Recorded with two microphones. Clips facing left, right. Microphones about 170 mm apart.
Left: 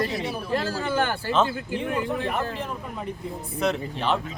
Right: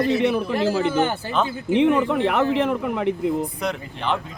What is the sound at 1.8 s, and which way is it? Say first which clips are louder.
Speech: right 10 dB; 75° right (ahead or behind).